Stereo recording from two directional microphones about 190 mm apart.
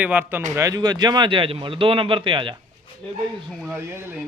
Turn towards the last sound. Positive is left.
turn(degrees=-10)  # may be behind; listen again after turning